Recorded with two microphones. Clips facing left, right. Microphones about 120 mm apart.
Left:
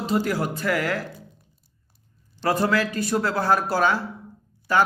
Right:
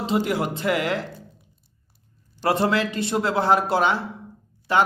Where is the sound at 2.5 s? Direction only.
25° right (ahead or behind).